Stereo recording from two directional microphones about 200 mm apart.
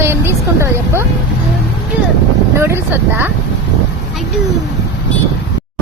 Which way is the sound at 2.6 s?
10° right (ahead or behind).